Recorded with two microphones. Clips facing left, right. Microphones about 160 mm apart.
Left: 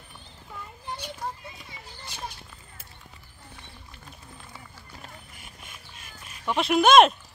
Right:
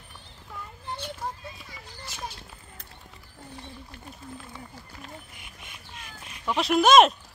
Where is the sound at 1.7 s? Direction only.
30° left (ahead or behind).